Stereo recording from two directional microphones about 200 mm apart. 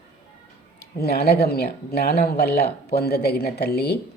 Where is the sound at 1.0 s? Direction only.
50° left (ahead or behind).